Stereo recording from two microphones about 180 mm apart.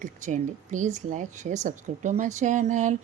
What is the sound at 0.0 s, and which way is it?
Speech, 45° right (ahead or behind).